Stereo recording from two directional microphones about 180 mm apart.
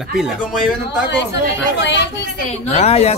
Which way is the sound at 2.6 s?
35° left (ahead or behind).